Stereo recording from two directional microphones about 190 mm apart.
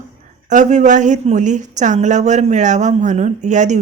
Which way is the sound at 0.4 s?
40° right (ahead or behind).